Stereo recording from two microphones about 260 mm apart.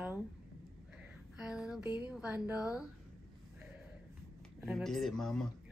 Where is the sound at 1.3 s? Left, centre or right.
Centre.